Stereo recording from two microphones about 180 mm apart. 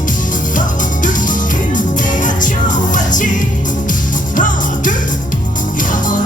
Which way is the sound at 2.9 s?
45° left (ahead or behind).